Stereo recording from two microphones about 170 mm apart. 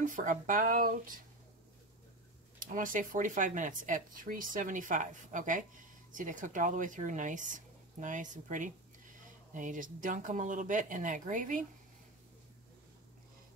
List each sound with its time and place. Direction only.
0.0 s speech: 50° right (ahead or behind)
2.6 s speech: 50° right (ahead or behind)